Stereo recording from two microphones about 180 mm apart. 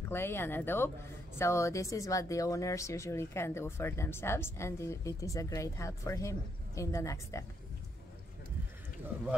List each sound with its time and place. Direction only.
0.1 s speech: 10° left (ahead or behind)